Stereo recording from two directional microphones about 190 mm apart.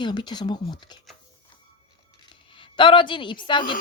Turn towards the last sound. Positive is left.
turn(degrees=25)  # may be behind; listen again after turning